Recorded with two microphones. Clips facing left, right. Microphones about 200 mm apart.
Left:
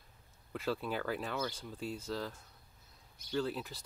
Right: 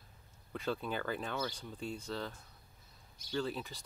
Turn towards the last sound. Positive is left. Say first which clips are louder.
# left 1 dB
turn(degrees=5)  # may be behind; listen again after turning